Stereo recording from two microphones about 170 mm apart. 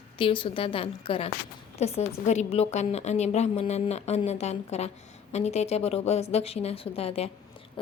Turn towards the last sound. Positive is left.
turn(degrees=35)  # may be behind; listen again after turning